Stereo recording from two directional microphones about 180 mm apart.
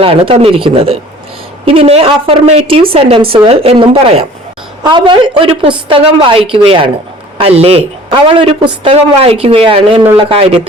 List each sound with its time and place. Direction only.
0.0 s a woman's voice: 30° right (ahead or behind)